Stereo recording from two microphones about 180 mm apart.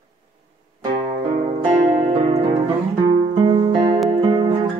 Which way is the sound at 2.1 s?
35° right (ahead or behind).